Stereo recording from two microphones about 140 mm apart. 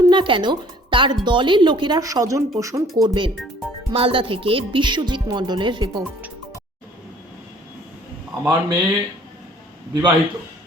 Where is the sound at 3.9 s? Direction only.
40° right (ahead or behind).